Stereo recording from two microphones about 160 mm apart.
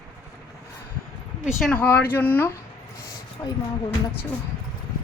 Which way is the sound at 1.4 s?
5° left (ahead or behind).